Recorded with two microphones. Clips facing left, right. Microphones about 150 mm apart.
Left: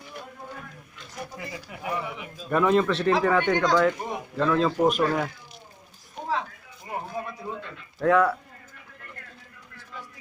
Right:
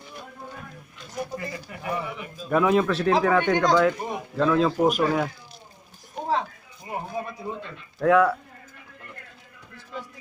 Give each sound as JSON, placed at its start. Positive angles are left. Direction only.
{"t": 1.9, "sound": "speech", "side_deg": 0}
{"t": 6.1, "sound": "a sound", "side_deg": -40}
{"t": 7.4, "sound": "a man's voice", "side_deg": -10}
{"t": 8.0, "sound": "speech", "side_deg": 0}